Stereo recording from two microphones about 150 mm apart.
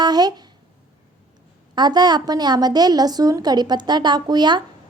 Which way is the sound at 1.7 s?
30° right (ahead or behind).